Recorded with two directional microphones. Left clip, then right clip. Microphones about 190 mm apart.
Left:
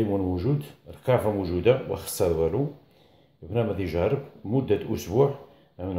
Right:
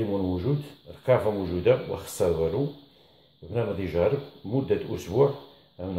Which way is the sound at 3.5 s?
40° left (ahead or behind).